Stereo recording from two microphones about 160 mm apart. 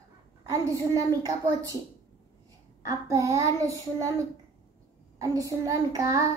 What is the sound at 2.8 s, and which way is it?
Speech, 20° right (ahead or behind).